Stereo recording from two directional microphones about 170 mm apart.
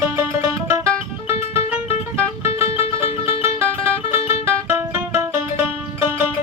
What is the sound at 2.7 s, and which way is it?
Music, 35° left (ahead or behind).